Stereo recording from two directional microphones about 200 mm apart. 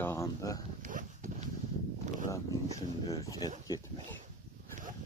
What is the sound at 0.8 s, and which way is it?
Horse, 40° right (ahead or behind).